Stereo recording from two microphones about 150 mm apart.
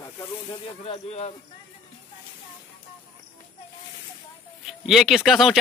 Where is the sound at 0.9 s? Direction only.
45° left (ahead or behind).